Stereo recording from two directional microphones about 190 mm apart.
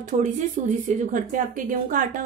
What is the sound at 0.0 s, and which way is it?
Speech, 40° right (ahead or behind).